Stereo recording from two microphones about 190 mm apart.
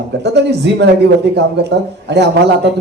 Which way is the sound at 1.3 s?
65° right (ahead or behind).